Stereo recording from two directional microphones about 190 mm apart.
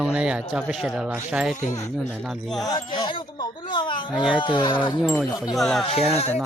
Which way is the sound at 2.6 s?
20° left (ahead or behind).